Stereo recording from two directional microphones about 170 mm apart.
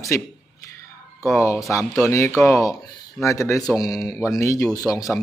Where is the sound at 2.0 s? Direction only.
15° left (ahead or behind).